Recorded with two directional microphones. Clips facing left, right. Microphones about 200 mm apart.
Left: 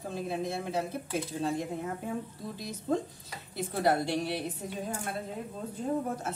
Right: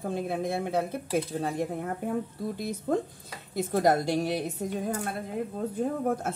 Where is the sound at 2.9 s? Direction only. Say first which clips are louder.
Right 2 dB; 60° right (ahead or behind).